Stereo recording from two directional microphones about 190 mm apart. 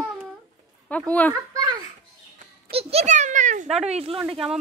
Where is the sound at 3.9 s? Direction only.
30° right (ahead or behind).